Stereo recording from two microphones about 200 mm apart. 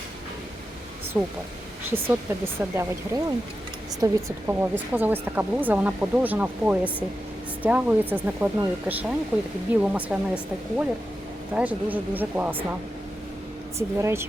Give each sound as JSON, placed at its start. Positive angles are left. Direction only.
{"t": 1.2, "sound": "a woman's voice", "side_deg": -5}
{"t": 13.7, "sound": "a woman's voice", "side_deg": -15}